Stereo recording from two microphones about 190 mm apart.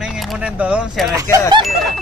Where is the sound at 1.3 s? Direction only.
20° right (ahead or behind).